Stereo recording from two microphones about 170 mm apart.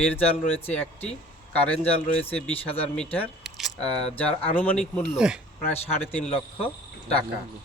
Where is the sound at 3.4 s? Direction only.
Centre (ahead or behind).